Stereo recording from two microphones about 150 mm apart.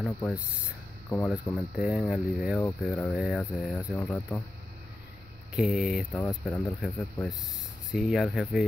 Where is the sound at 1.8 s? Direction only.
5° right (ahead or behind); by 4.4 s 10° left (ahead or behind).